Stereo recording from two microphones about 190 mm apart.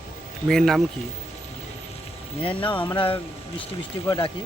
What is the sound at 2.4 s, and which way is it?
Speech, 25° left (ahead or behind).